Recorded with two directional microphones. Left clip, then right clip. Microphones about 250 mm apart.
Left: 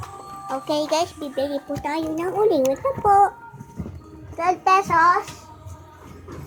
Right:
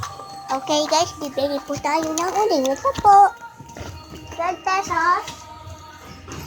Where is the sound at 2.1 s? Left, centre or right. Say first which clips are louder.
Even; right.